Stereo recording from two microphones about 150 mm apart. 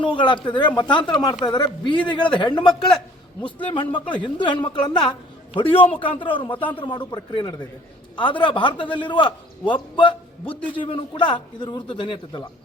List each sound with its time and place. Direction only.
0.0 s a man's voice: 35° left (ahead or behind)